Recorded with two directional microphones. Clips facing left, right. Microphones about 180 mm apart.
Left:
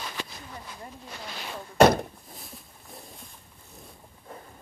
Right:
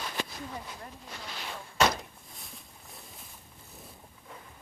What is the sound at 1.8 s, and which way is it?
Door, 55° left (ahead or behind).